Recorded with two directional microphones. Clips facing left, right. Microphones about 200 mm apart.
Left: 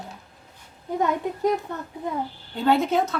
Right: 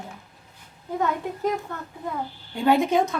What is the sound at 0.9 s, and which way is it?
Speech, 20° left (ahead or behind).